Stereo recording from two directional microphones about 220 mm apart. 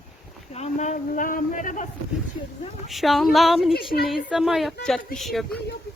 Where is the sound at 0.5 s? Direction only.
30° left (ahead or behind).